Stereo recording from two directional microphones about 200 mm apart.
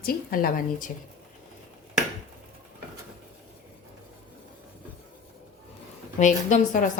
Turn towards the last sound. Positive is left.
turn(degrees=40)  # may be behind; listen again after turning